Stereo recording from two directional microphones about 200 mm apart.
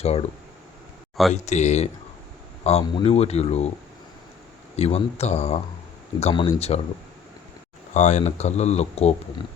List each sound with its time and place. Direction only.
0.0 s speech: 30° left (ahead or behind)
1.3 s speech: 35° left (ahead or behind)
4.8 s speech: 30° left (ahead or behind)
7.9 s speech: 35° left (ahead or behind)